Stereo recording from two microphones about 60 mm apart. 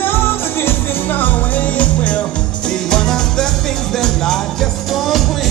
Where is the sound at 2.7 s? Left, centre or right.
Centre.